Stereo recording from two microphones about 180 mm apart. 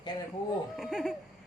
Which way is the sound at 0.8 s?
Centre (ahead or behind).